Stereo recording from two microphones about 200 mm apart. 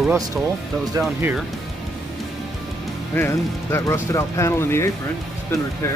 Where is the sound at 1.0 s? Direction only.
15° right (ahead or behind).